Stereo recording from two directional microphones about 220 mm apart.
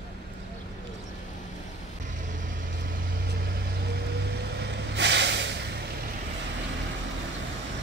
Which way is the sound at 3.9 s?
50° right (ahead or behind).